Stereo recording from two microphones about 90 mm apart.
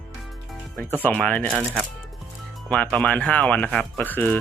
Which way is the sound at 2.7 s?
10° left (ahead or behind).